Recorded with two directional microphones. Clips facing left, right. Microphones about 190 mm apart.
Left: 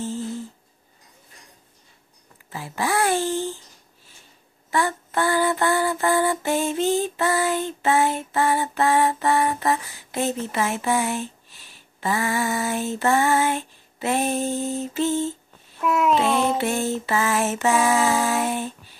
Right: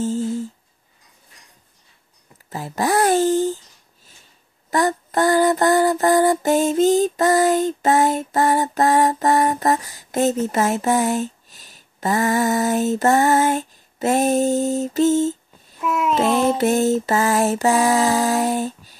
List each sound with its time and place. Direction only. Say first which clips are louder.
2.5 s mantra: right 5 dB; 40° right (ahead or behind)
4.6 s mantra: right 4 dB; 40° right (ahead or behind)
15.8 s a sound: even; centre (ahead or behind)
16.5 s mantra: right 6 dB; 40° right (ahead or behind)